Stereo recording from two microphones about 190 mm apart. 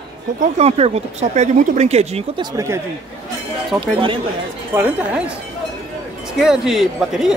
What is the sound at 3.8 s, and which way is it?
Speech, 25° right (ahead or behind).